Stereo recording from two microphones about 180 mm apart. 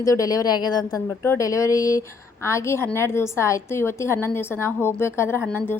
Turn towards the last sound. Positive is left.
turn(degrees=10)  # may be behind; listen again after turning